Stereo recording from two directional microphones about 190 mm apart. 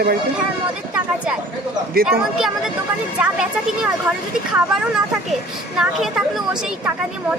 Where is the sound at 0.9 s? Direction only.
5° right (ahead or behind).